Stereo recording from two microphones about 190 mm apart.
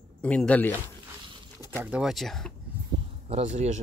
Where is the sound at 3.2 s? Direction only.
35° right (ahead or behind).